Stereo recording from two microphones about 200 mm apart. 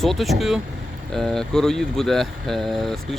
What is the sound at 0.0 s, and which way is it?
Speech, centre (ahead or behind).